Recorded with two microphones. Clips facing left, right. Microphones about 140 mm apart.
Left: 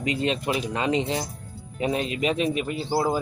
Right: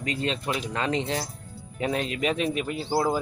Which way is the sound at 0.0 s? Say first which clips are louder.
Left 4 dB; 15° left (ahead or behind).